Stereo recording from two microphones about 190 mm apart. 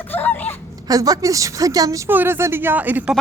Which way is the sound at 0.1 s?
10° left (ahead or behind).